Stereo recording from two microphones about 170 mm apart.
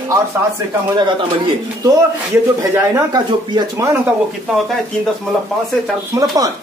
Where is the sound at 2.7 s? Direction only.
15° right (ahead or behind).